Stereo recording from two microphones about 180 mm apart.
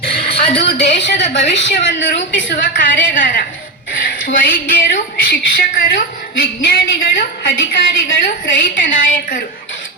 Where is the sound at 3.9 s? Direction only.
50° left (ahead or behind).